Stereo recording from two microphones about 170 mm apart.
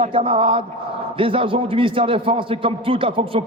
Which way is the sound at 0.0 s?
35° right (ahead or behind).